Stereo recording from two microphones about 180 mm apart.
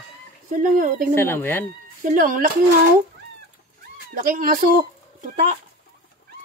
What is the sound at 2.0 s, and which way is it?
Speech, 50° right (ahead or behind).